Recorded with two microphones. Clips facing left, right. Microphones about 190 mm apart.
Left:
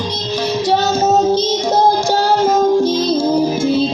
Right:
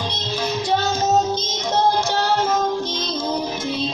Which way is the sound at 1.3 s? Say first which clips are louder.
Left 8 dB; 35° left (ahead or behind).